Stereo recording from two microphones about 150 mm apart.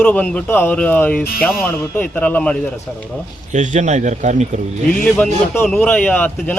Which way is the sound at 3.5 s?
55° right (ahead or behind).